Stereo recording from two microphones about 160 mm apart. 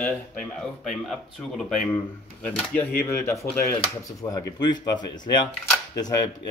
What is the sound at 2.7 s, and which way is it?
Speech, 15° left (ahead or behind).